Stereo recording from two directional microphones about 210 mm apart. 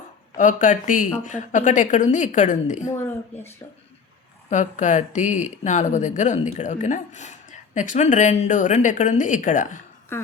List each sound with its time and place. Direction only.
0.3 s speech: 40° left (ahead or behind)
2.9 s speech: 10° left (ahead or behind)
4.4 s speech: 35° left (ahead or behind)
10.1 s speech: 10° left (ahead or behind)